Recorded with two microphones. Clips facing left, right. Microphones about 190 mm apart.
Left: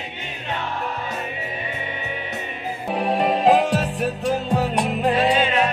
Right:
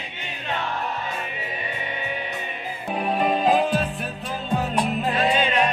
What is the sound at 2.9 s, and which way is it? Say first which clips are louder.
Music: left 2 dB; 75° left (ahead or behind).